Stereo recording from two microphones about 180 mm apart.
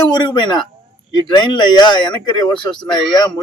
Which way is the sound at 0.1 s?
25° left (ahead or behind).